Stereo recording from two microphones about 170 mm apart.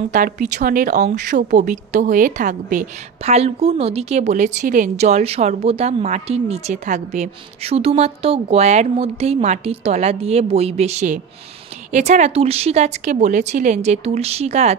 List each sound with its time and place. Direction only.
0.1 s speech: 50° right (ahead or behind)